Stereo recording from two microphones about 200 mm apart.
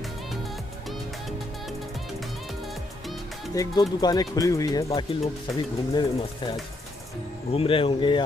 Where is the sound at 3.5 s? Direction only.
20° left (ahead or behind).